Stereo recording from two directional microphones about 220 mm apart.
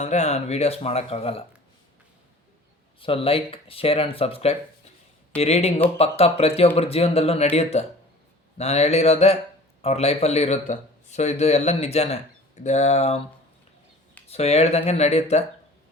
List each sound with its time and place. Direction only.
0.0 s speech: 30° left (ahead or behind)
3.0 s speech: 25° left (ahead or behind)
14.3 s speech: 30° left (ahead or behind)